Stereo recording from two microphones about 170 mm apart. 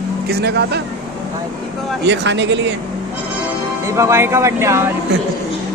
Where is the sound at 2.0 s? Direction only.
90° right.